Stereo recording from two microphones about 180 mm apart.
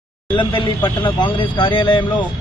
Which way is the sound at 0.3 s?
25° left (ahead or behind).